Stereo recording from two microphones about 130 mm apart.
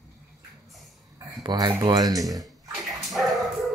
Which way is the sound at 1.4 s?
35° right (ahead or behind).